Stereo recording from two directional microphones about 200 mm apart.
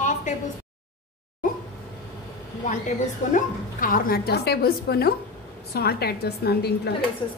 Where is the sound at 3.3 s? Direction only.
45° left (ahead or behind).